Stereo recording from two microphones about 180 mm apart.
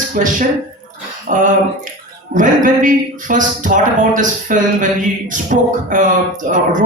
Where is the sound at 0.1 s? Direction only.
45° right (ahead or behind).